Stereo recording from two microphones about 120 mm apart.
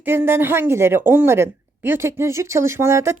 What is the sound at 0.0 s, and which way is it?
A woman's voice, 20° right (ahead or behind).